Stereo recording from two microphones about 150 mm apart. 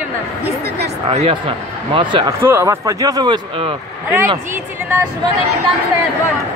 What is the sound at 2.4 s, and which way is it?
Speech, 15° right (ahead or behind).